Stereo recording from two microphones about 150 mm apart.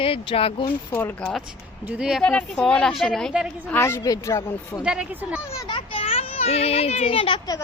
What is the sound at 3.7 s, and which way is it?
A woman's voice, 15° left (ahead or behind).